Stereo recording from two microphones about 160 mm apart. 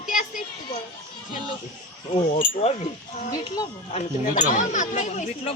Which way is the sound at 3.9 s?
50° left (ahead or behind).